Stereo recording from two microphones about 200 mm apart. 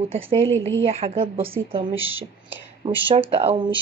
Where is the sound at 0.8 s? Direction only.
30° right (ahead or behind).